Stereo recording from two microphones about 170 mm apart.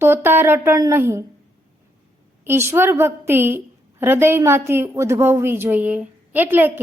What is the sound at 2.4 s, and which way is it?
A woman's voice, 15° right (ahead or behind).